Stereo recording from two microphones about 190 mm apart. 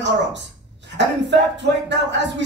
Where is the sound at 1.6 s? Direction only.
65° right (ahead or behind).